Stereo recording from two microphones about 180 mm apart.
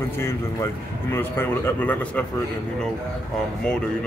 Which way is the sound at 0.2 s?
15° left (ahead or behind).